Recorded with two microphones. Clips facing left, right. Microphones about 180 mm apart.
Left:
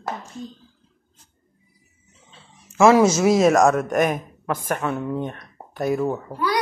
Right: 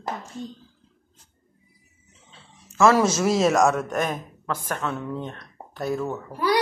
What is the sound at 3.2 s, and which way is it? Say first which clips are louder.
Speech: left 4 dB; 5° left (ahead or behind).